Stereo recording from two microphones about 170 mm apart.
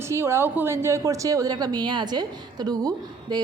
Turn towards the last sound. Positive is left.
turn(degrees=-20)  # may be behind; listen again after turning